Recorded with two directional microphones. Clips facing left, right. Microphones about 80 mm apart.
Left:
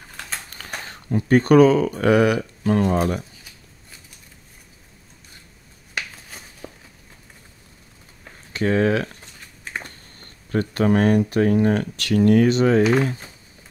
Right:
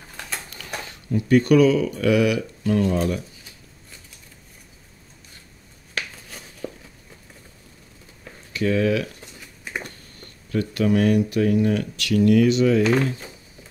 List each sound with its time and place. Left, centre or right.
0.5 s speech: left
5.9 s a sound: centre
8.5 s speech: left